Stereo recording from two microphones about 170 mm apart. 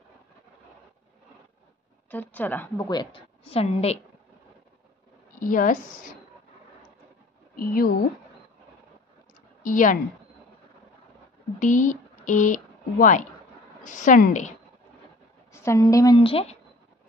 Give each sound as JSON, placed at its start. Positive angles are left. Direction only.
{"t": 2.0, "sound": "speech", "side_deg": 10}
{"t": 2.9, "sound": "a woman's voice", "side_deg": 25}
{"t": 5.4, "sound": "a woman's voice", "side_deg": 50}
{"t": 7.5, "sound": "speech", "side_deg": 55}
{"t": 9.6, "sound": "a woman's voice", "side_deg": 50}
{"t": 11.6, "sound": "a woman's voice", "side_deg": 50}
{"t": 15.5, "sound": "a woman's voice", "side_deg": 15}
{"t": 16.2, "sound": "a woman's voice", "side_deg": 35}